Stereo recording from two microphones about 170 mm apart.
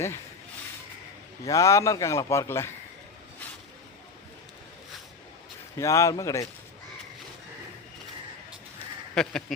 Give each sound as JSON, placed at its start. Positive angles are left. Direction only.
{"t": 1.5, "sound": "a man's voice", "side_deg": 20}
{"t": 5.7, "sound": "speech", "side_deg": 20}
{"t": 9.1, "sound": "goat", "side_deg": 5}